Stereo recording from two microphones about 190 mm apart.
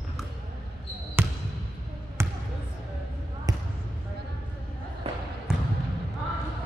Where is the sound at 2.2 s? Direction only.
15° right (ahead or behind).